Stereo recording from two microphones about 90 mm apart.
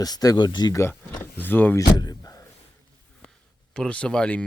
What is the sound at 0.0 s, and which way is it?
Speech, 45° left (ahead or behind).